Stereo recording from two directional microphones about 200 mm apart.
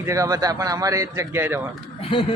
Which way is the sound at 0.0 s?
15° right (ahead or behind).